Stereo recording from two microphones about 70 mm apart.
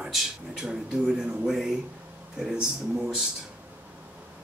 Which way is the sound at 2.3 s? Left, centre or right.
Centre.